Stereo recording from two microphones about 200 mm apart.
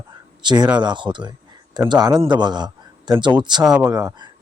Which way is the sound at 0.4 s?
20° right (ahead or behind).